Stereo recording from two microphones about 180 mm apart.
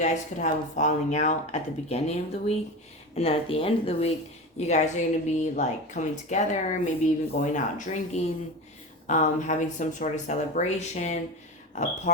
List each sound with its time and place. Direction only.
0.0 s a woman's voice: 40° left (ahead or behind)